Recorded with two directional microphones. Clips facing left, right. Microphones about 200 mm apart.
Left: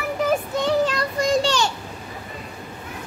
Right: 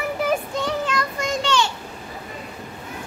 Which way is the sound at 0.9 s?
35° left (ahead or behind).